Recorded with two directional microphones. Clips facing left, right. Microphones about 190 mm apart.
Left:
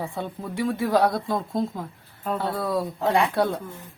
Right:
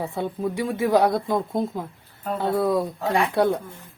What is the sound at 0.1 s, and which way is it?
Speech, 15° right (ahead or behind).